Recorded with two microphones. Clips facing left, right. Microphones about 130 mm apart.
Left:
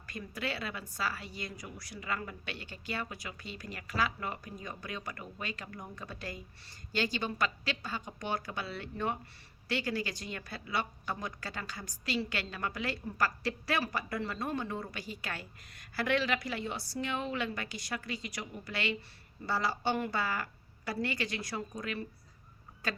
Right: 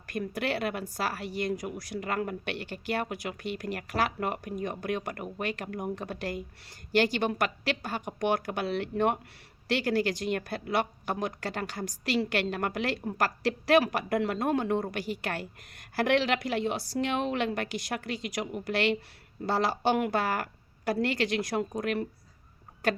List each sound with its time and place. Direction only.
0.1 s a woman's voice: 70° right (ahead or behind)
12.1 s speech: 60° right (ahead or behind)
13.7 s a woman's voice: 75° right (ahead or behind)
19.5 s a woman's voice: 85° right; by 22.0 s 60° right (ahead or behind)